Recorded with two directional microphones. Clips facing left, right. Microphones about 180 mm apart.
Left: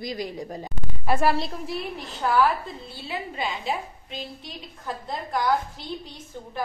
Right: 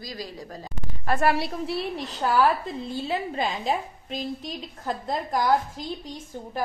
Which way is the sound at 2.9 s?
40° right (ahead or behind).